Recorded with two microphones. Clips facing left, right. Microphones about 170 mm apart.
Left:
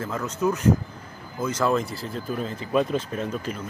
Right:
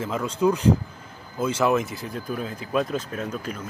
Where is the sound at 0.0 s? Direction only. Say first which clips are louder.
Right 3 dB; 15° right (ahead or behind).